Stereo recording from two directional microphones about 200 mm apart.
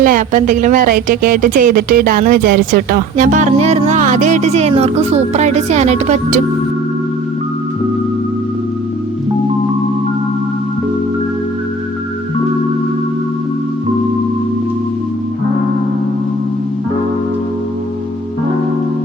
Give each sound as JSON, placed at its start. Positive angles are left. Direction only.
{"t": 0.0, "sound": "speech", "side_deg": -40}